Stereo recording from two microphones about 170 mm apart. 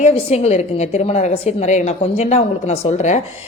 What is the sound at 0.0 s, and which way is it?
A woman's voice, 40° left (ahead or behind).